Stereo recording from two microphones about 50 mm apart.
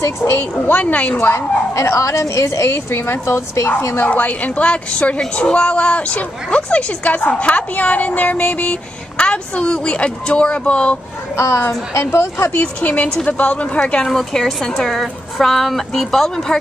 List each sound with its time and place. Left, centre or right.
0.0 s speech: left
0.7 s a woman's voice: left
1.3 s speech: left
2.9 s speech: left
4.1 s a woman's voice: left
11.3 s speech: left
12.5 s a woman's voice: left
14.0 s a woman's voice: centre